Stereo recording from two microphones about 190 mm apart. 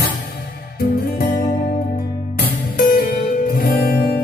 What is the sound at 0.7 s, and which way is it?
Music, 55° left (ahead or behind).